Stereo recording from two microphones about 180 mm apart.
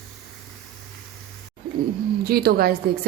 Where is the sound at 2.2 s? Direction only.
60° right (ahead or behind).